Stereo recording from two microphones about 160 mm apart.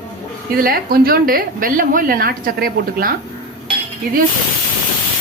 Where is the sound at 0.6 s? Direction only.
65° right (ahead or behind).